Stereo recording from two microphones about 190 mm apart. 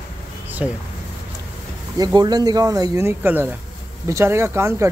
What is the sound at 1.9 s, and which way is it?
Speech, 20° right (ahead or behind).